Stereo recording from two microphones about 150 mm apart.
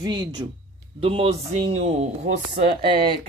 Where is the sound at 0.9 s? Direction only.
40° right (ahead or behind).